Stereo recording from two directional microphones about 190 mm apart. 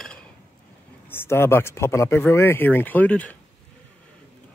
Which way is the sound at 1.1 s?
10° left (ahead or behind).